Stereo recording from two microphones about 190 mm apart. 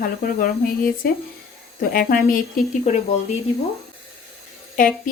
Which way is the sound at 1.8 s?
50° left (ahead or behind).